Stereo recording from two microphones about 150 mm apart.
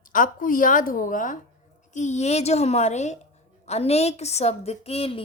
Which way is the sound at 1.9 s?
50° left (ahead or behind).